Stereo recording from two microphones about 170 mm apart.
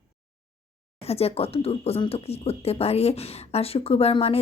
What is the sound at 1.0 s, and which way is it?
Speech, 35° left (ahead or behind).